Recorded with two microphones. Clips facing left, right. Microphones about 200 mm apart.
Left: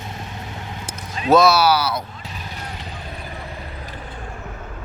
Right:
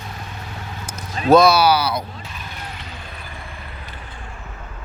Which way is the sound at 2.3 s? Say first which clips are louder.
Left 1 dB; 35° left (ahead or behind).